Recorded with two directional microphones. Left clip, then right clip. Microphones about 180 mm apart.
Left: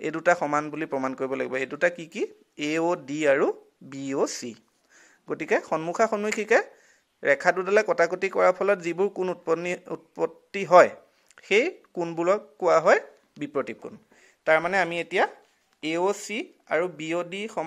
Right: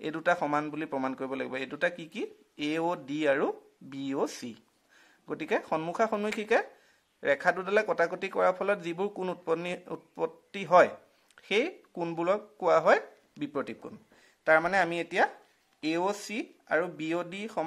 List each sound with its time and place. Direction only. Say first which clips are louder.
0.0 s a man's voice: left 5 dB; 20° left (ahead or behind)